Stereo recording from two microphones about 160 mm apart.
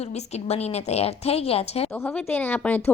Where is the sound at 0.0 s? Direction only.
40° left (ahead or behind).